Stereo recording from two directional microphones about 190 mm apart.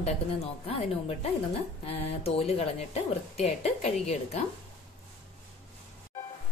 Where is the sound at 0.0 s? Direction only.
35° left (ahead or behind).